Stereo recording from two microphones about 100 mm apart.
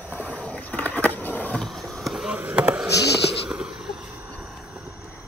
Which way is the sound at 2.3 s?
15° right (ahead or behind).